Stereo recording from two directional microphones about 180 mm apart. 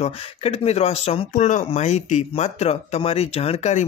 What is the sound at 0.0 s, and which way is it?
Speech, 35° left (ahead or behind).